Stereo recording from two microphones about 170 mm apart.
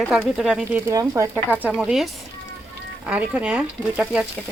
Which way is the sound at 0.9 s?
20° right (ahead or behind).